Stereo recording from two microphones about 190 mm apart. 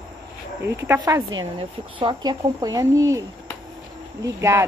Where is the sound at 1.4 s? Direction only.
25° right (ahead or behind).